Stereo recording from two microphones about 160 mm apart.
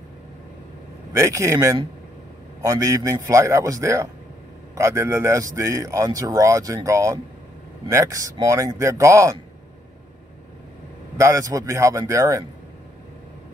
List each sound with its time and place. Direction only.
1.1 s a man's voice: 20° right (ahead or behind)
11.1 s a man's voice: 20° right (ahead or behind)